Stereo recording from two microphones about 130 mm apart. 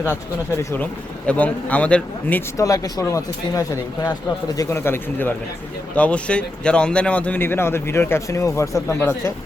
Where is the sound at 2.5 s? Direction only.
25° left (ahead or behind).